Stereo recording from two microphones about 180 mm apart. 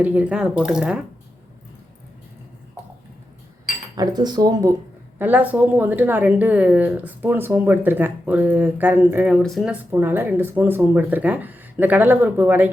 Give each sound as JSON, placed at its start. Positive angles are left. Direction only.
{"t": 0.0, "sound": "speech", "side_deg": -10}
{"t": 3.9, "sound": "speech", "side_deg": -20}
{"t": 5.2, "sound": "speech", "side_deg": -10}
{"t": 9.3, "sound": "speech", "side_deg": 0}
{"t": 9.9, "sound": "speech", "side_deg": -10}